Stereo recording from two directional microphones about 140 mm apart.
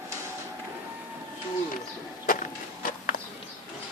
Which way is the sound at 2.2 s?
75° left (ahead or behind).